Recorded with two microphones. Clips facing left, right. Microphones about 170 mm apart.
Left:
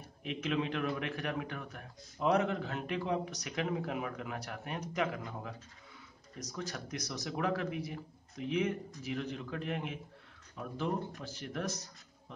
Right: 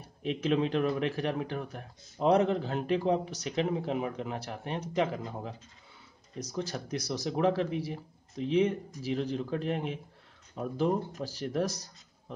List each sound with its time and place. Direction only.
0.2 s a man's voice: 35° right (ahead or behind)